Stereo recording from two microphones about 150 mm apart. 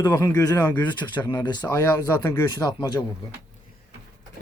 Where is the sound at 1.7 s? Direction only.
15° left (ahead or behind).